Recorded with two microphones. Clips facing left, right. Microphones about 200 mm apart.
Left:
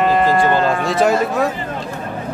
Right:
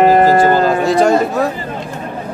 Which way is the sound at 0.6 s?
Centre (ahead or behind).